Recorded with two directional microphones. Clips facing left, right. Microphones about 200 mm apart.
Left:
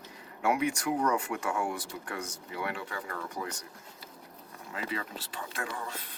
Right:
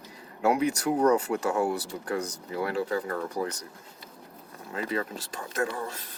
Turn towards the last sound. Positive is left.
turn(degrees=-40)  # may be behind; listen again after turning